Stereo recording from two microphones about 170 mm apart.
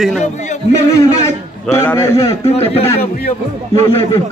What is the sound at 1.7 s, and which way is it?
Speech, 15° left (ahead or behind).